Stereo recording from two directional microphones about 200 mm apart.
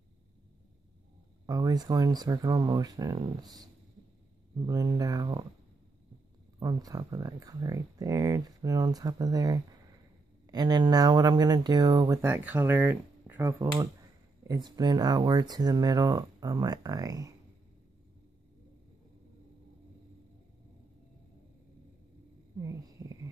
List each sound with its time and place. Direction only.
1.4 s speech: 20° right (ahead or behind)
4.6 s speech: 15° right (ahead or behind)
6.6 s speech: 20° right (ahead or behind)